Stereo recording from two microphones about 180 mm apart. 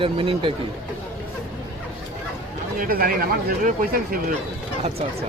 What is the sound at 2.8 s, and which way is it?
Speech, 55° right (ahead or behind).